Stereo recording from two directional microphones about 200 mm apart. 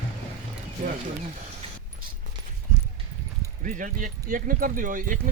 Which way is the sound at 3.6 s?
40° right (ahead or behind).